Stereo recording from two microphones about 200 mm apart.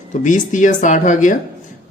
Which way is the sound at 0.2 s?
40° left (ahead or behind).